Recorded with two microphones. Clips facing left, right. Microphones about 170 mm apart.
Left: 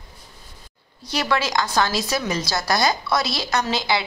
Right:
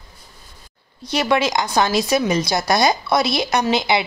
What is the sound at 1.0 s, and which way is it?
Speech, 20° right (ahead or behind).